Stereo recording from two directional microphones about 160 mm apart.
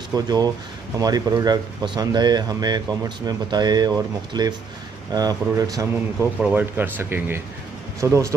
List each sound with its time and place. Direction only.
0.1 s speech: 25° right (ahead or behind)
6.4 s speech: 10° right (ahead or behind)